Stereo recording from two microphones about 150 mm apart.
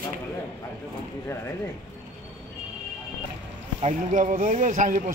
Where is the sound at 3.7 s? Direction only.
50° right (ahead or behind).